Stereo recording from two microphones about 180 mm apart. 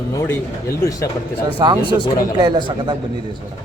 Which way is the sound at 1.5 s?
25° right (ahead or behind).